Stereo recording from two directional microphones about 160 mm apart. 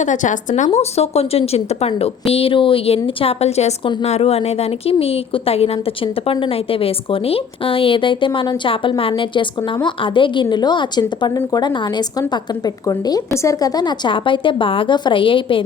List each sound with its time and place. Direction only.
0.0 s a woman's voice: 50° left (ahead or behind); by 15.6 s 35° left (ahead or behind)